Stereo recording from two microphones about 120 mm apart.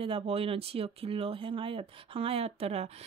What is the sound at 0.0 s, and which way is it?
Speech, 50° right (ahead or behind).